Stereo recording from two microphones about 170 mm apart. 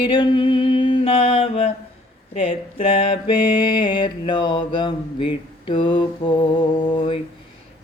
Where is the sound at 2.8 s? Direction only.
30° left (ahead or behind).